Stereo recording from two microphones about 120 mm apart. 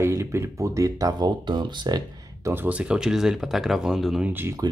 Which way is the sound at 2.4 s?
15° right (ahead or behind).